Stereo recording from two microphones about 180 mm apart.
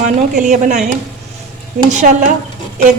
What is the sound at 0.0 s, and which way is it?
A woman's voice, 45° right (ahead or behind).